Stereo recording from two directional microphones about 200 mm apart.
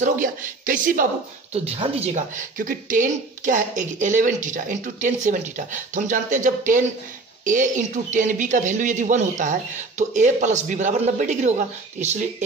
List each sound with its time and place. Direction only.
0.0 s speech: 40° right (ahead or behind)
1.5 s speech: 30° right (ahead or behind)